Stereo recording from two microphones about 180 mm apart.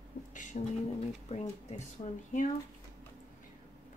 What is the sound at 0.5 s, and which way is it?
Speech, 45° left (ahead or behind).